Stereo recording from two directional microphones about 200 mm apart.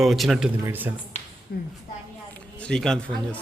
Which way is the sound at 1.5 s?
50° left (ahead or behind).